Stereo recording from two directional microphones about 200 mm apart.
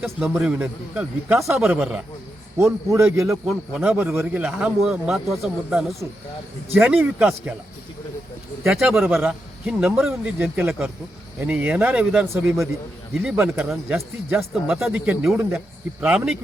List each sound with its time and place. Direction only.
0.0 s a man's voice: 10° right (ahead or behind)
3.4 s a man's voice: centre (ahead or behind)
8.6 s a man's voice: centre (ahead or behind)